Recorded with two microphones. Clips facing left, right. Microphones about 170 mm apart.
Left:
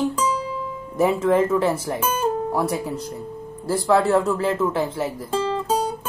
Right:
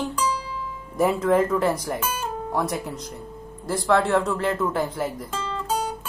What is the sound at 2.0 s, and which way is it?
Guitar, 30° left (ahead or behind).